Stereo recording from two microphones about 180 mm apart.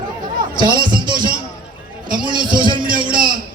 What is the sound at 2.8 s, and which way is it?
Speech, 50° right (ahead or behind).